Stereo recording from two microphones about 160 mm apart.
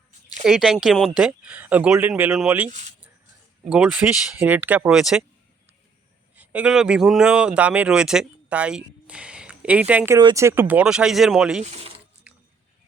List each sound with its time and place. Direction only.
0.4 s speech: centre (ahead or behind)
3.7 s speech: 5° right (ahead or behind)
6.3 s speech: 10° right (ahead or behind)
10.2 s speech: 30° right (ahead or behind)
10.4 s speech: 15° right (ahead or behind)
11.6 s speech: 40° right (ahead or behind)
12.3 s a sound: 10° right (ahead or behind)